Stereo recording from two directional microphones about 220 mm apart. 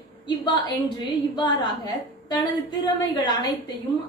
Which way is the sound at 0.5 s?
20° left (ahead or behind).